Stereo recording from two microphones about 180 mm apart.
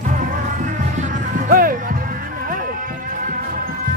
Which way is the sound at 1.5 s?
50° right (ahead or behind).